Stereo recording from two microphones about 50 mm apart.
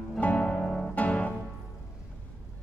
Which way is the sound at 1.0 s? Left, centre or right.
Left.